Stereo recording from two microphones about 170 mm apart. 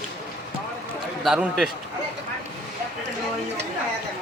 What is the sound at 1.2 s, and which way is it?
Speech, centre (ahead or behind).